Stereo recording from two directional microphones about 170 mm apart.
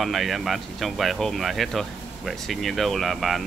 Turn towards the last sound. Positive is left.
turn(degrees=0)  # may be behind; listen again after turning